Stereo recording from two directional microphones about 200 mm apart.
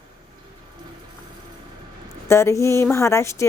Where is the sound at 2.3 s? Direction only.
15° left (ahead or behind).